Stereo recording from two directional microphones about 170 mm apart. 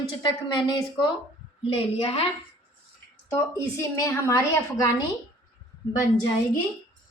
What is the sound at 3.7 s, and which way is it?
Speech, 15° left (ahead or behind).